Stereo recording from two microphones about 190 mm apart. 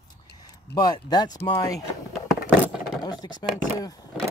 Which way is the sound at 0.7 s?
20° left (ahead or behind).